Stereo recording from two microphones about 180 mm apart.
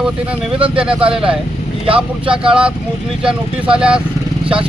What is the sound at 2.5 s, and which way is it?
Speech, 5° right (ahead or behind).